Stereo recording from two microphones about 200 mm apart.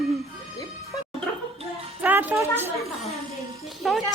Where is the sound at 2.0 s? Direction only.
10° right (ahead or behind).